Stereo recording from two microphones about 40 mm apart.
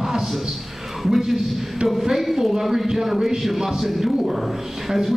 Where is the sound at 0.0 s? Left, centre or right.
Centre.